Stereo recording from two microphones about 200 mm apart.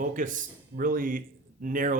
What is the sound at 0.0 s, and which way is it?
Speech, 40° right (ahead or behind).